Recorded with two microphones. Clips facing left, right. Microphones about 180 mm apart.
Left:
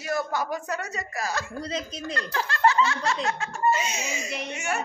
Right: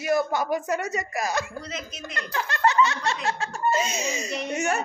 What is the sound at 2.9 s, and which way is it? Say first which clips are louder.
Snicker: even; 25° right (ahead or behind).